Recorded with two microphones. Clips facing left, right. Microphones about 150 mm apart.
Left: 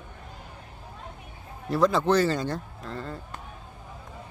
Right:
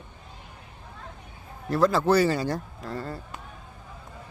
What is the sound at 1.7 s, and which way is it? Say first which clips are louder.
Speech: right 1 dB; centre (ahead or behind).